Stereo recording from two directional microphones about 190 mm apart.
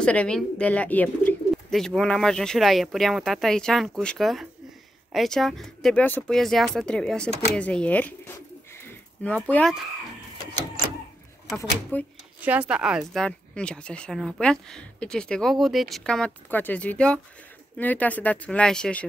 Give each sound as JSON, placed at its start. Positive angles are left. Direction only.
{"t": 0.0, "sound": "speech", "side_deg": 5}
{"t": 11.5, "sound": "speech", "side_deg": 10}
{"t": 12.4, "sound": "speech", "side_deg": -5}